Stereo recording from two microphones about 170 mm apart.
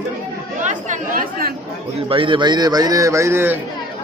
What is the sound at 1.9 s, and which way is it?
A man's voice, 30° right (ahead or behind).